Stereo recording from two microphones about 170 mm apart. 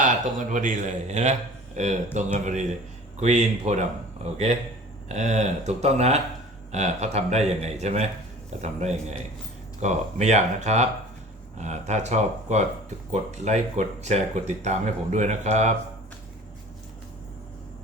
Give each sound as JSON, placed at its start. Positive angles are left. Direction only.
{"t": 0.0, "sound": "speech", "side_deg": -50}